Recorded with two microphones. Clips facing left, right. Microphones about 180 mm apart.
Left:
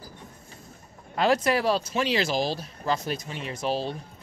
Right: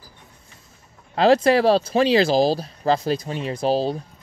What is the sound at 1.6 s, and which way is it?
Speech, 30° right (ahead or behind).